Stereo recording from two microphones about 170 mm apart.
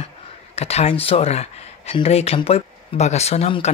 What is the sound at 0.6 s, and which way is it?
Speech, 35° left (ahead or behind).